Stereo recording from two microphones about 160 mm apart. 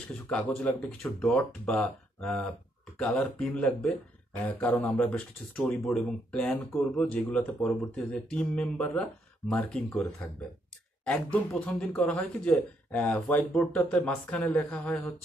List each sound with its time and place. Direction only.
0.1 s speech: 5° left (ahead or behind)
1.7 s speech: centre (ahead or behind)
11.1 s speech: 5° left (ahead or behind)